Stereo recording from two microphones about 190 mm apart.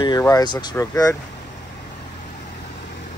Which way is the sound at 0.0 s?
20° left (ahead or behind).